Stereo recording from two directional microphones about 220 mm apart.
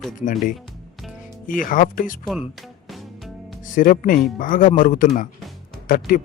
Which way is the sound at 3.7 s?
35° left (ahead or behind).